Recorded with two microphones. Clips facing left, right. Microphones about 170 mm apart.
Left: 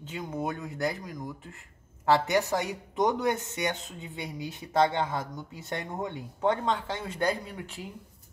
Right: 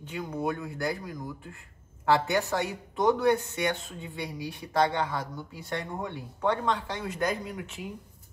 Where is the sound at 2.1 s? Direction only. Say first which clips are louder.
Left 1 dB; 20° left (ahead or behind).